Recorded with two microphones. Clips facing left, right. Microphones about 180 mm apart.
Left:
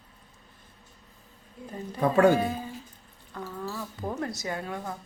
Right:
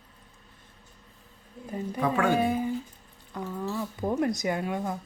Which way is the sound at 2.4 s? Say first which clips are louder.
Right 6 dB; 15° right (ahead or behind).